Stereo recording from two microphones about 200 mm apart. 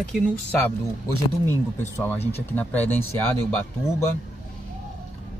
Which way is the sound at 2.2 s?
30° left (ahead or behind).